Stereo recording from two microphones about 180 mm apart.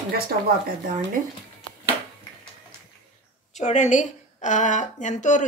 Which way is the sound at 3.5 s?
40° left (ahead or behind).